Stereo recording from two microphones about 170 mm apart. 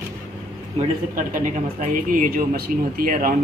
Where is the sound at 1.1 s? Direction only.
50° right (ahead or behind).